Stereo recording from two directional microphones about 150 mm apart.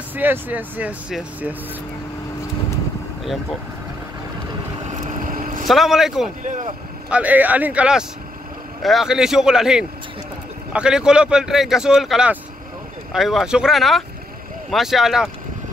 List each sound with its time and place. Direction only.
0.1 s speech: 10° right (ahead or behind)
5.2 s vehicle: 65° right (ahead or behind)
5.7 s speech: centre (ahead or behind)
6.4 s speech: 55° right (ahead or behind)
7.1 s speech: 10° right (ahead or behind)